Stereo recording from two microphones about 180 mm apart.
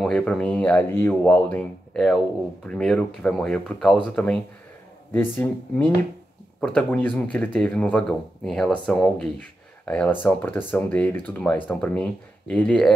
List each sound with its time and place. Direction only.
0.0 s speech: 5° left (ahead or behind)
6.6 s speech: 5° left (ahead or behind)